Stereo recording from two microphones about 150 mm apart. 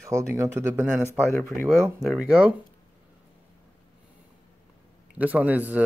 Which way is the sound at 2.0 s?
5° right (ahead or behind).